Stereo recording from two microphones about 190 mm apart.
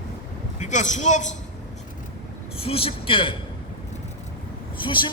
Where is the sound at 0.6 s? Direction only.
40° left (ahead or behind).